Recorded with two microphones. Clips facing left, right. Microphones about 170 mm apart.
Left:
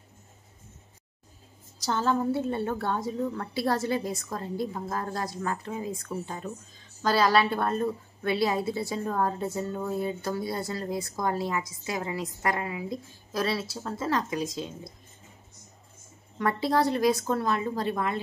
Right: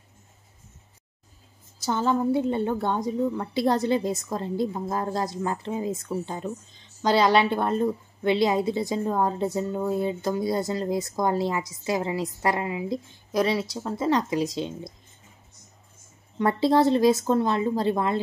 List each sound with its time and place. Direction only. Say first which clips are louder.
1.9 s a woman's voice: right 3 dB; 15° right (ahead or behind)
16.3 s a woman's voice: right 5 dB; 25° right (ahead or behind)